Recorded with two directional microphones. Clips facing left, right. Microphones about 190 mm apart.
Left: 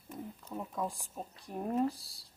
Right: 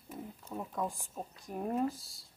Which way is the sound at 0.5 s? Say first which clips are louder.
Right 1 dB; centre (ahead or behind).